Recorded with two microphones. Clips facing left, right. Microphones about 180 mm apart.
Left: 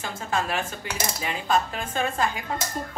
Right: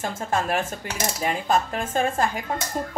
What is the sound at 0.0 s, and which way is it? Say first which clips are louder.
A woman's voice: right 3 dB; 50° right (ahead or behind).